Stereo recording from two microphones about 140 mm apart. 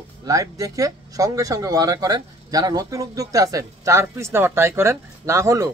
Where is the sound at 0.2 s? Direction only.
25° right (ahead or behind).